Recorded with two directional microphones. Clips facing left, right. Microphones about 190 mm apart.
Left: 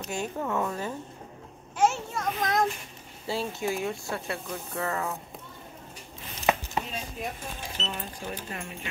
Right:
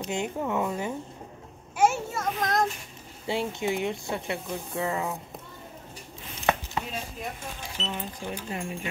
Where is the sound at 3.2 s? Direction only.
20° right (ahead or behind).